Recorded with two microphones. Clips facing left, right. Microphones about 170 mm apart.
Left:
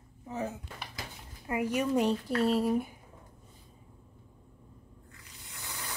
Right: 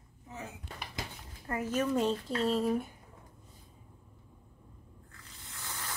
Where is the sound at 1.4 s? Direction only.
15° left (ahead or behind).